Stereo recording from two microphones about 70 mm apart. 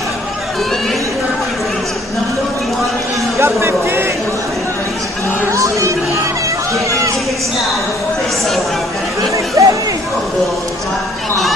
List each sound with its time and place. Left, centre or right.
3.3 s speech: right
5.5 s music: right
9.6 s a sound: right